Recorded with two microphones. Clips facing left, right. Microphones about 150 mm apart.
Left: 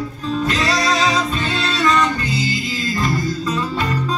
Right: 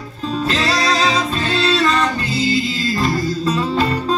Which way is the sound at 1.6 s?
30° right (ahead or behind).